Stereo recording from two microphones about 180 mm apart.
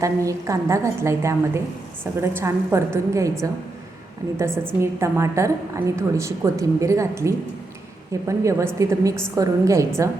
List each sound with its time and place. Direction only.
0.0 s a woman's voice: 15° right (ahead or behind)